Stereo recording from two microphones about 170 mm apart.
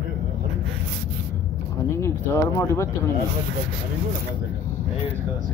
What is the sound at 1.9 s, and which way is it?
Speech, 15° left (ahead or behind).